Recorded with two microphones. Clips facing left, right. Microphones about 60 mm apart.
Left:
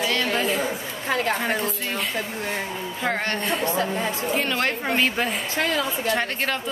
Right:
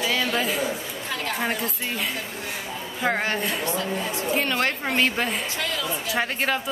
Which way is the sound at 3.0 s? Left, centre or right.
Centre.